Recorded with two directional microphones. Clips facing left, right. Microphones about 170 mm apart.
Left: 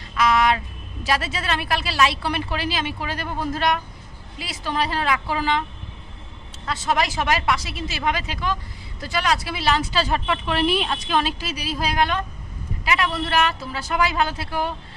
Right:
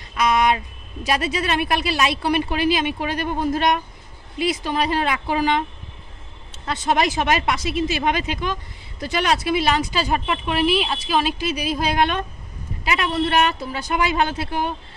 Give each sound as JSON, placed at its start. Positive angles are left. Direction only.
{"t": 0.1, "sound": "a sound", "side_deg": -20}
{"t": 1.0, "sound": "a woman's voice", "side_deg": -20}
{"t": 10.6, "sound": "a woman's voice", "side_deg": -5}